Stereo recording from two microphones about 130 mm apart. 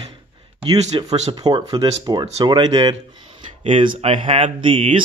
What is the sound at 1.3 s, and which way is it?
Speech, 30° right (ahead or behind).